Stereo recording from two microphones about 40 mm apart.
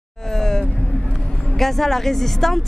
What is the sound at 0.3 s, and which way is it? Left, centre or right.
Vehicle, centre.